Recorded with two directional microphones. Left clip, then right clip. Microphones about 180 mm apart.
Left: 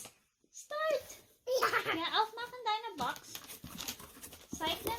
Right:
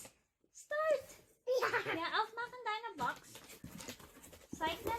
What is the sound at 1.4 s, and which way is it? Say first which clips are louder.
Laughter: left 3 dB; 30° left (ahead or behind).